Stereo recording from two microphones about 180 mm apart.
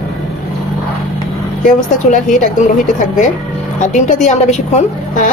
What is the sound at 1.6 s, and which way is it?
A woman's voice, 45° left (ahead or behind).